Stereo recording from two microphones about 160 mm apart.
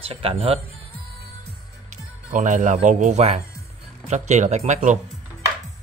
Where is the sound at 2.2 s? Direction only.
55° right (ahead or behind).